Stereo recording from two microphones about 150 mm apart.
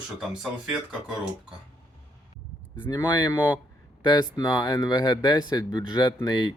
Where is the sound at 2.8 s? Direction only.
15° left (ahead or behind).